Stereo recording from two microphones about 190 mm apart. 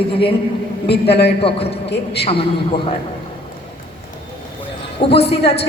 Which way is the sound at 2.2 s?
30° left (ahead or behind).